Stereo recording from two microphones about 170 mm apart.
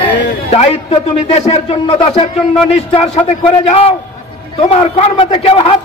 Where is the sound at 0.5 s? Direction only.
35° left (ahead or behind).